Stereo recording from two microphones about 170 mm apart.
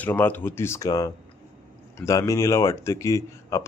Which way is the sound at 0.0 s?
10° left (ahead or behind).